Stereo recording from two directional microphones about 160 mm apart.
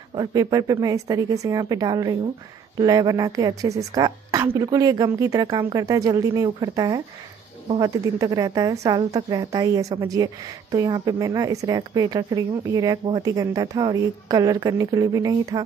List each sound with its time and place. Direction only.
0.1 s a woman's voice: 25° right (ahead or behind)